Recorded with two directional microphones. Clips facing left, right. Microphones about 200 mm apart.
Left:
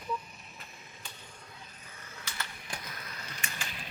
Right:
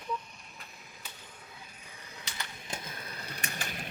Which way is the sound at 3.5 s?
60° right (ahead or behind).